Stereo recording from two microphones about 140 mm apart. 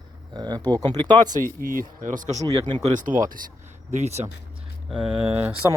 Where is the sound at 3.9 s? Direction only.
50° right (ahead or behind).